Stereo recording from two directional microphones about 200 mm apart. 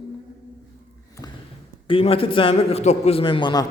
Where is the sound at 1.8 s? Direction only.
30° left (ahead or behind).